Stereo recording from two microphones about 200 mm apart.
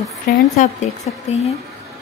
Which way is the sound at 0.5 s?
35° left (ahead or behind).